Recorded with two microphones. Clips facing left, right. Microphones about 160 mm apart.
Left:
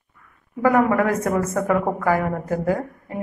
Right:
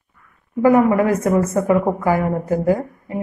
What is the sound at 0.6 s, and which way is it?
A woman's voice, 15° right (ahead or behind).